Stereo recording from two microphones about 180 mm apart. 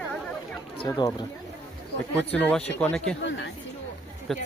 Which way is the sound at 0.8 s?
25° left (ahead or behind).